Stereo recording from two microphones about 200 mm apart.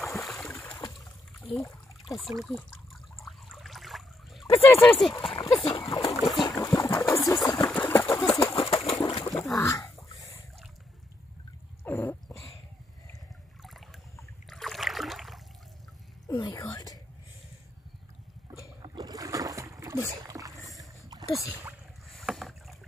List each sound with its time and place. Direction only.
0.0 s boat: centre (ahead or behind)
1.4 s water: 5° left (ahead or behind)
2.4 s trickle: centre (ahead or behind)
4.5 s speech: 10° left (ahead or behind)
5.1 s speech: 25° left (ahead or behind)
6.1 s boat: centre (ahead or behind)
6.6 s a sound: 15° left (ahead or behind)
7.4 s engine: 20° left (ahead or behind)
7.9 s a sound: 10° left (ahead or behind)
11.8 s dog: 10° left (ahead or behind)
13.6 s a sound: centre (ahead or behind)
16.3 s a sound: 20° left (ahead or behind)
18.8 s boat: 20° right (ahead or behind)
22.1 s rowboat: centre (ahead or behind)